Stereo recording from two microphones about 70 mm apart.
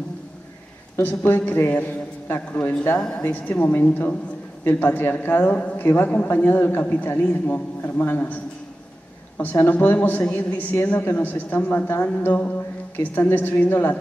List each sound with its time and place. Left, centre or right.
1.0 s a woman's voice: left
3.0 s a woman's voice: centre
3.3 s a woman's voice: left
9.4 s a woman's voice: left